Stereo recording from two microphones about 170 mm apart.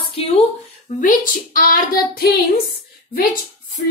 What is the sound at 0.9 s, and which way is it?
Speech, 55° left (ahead or behind).